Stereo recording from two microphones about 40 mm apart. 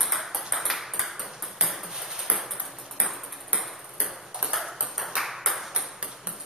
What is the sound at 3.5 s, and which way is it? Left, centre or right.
Ping, right.